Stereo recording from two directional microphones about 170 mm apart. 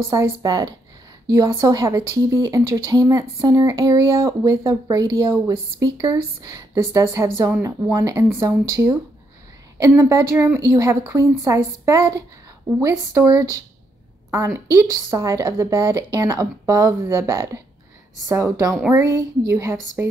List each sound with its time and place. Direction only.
0.1 s a woman's voice: 20° right (ahead or behind)